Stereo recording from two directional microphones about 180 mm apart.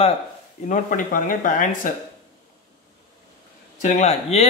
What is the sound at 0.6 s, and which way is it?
Speech, 45° left (ahead or behind).